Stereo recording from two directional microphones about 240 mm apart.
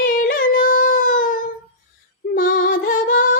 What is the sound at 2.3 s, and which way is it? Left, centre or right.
Music, left.